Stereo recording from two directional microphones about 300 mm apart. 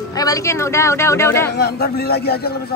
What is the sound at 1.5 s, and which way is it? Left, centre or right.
Speech, left.